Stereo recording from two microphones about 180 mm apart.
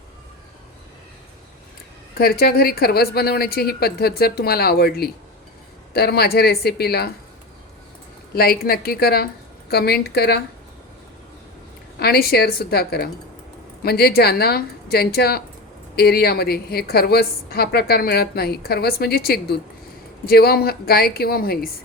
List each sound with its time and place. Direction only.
2.1 s a woman's voice: 55° left (ahead or behind)
8.4 s a woman's voice: 60° left (ahead or behind)
11.9 s a woman's voice: 60° left (ahead or behind)